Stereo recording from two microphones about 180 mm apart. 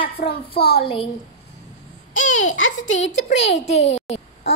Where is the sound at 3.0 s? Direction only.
40° left (ahead or behind).